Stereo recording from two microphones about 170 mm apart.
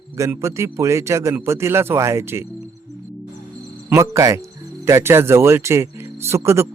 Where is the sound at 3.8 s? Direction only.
15° right (ahead or behind).